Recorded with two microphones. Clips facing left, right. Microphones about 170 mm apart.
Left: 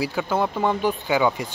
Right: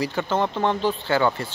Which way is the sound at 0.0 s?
10° left (ahead or behind).